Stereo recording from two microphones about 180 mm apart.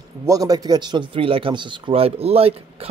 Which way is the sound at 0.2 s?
20° right (ahead or behind).